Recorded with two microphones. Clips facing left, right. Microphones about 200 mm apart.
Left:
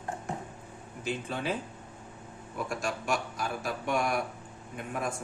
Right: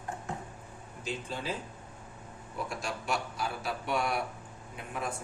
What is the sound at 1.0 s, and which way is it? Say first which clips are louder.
Speech: left 4 dB; 60° left (ahead or behind).